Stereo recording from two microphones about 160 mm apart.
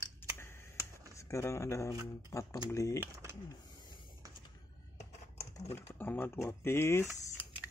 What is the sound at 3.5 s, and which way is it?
Hiss, 25° left (ahead or behind).